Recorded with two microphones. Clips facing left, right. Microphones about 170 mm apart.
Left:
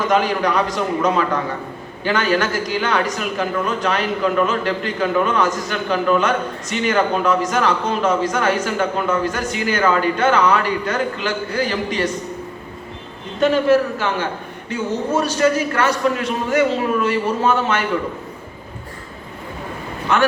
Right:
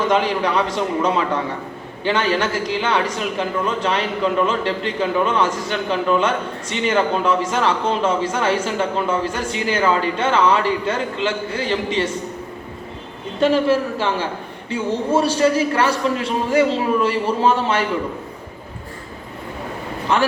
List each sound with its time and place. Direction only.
0.1 s a man's voice: 30° right (ahead or behind)
13.4 s a man's voice: 30° right (ahead or behind)